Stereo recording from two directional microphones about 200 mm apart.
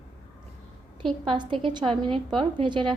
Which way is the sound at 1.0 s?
25° right (ahead or behind).